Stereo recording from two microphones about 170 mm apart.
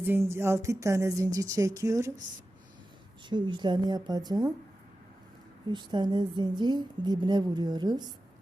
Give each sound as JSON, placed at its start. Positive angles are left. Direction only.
{"t": 0.0, "sound": "a sound", "side_deg": -15}
{"t": 3.2, "sound": "speech", "side_deg": -25}
{"t": 5.6, "sound": "speech", "side_deg": -25}